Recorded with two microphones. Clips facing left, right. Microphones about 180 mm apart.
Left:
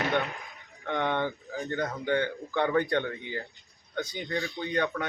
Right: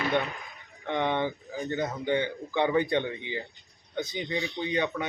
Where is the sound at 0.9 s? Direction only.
15° right (ahead or behind).